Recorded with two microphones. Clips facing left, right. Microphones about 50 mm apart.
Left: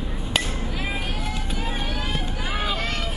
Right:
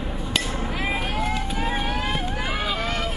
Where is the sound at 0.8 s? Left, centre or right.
Right.